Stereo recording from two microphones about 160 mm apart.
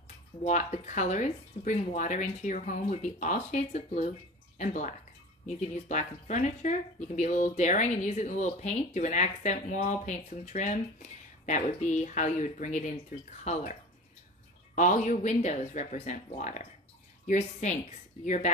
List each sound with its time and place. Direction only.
0.4 s speech: 45° left (ahead or behind)
14.8 s speech: 50° left (ahead or behind)